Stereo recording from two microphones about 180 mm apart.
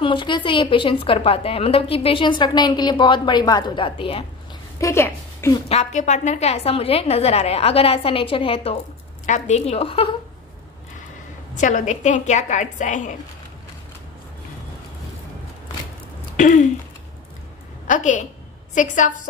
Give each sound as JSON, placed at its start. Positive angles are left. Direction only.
{"t": 0.0, "sound": "a woman's voice", "side_deg": 25}
{"t": 4.7, "sound": "a woman's voice", "side_deg": 15}
{"t": 5.7, "sound": "a woman's voice", "side_deg": 40}
{"t": 9.2, "sound": "a woman's voice", "side_deg": 40}
{"t": 11.5, "sound": "a woman's voice", "side_deg": 45}
{"t": 16.3, "sound": "a woman's voice", "side_deg": 45}
{"t": 17.8, "sound": "a woman's voice", "side_deg": 45}